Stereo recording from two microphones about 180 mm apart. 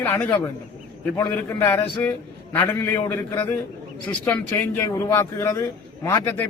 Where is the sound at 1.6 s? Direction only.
10° left (ahead or behind).